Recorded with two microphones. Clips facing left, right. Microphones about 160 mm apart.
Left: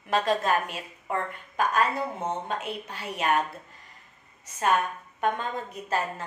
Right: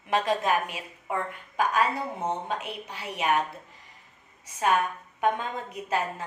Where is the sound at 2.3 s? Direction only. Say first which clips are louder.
Even; 10° right (ahead or behind).